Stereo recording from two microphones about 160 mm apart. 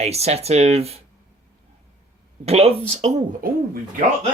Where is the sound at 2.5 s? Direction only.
40° right (ahead or behind).